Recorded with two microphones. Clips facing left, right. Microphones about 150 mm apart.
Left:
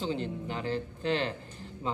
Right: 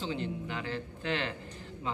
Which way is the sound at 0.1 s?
35° left (ahead or behind).